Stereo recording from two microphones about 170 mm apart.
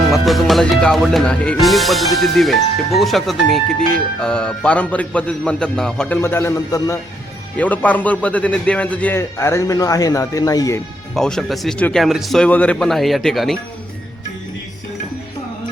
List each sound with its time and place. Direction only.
0.1 s speech: centre (ahead or behind)
6.2 s a man's voice: 15° left (ahead or behind)
11.1 s speech: 5° left (ahead or behind)